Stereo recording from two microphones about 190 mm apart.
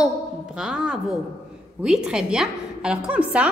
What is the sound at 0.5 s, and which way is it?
A woman's voice, 5° right (ahead or behind).